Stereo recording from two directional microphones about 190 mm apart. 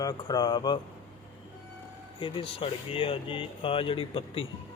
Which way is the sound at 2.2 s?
25° left (ahead or behind).